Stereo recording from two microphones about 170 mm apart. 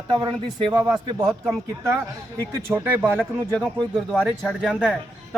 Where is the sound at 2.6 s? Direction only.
10° right (ahead or behind).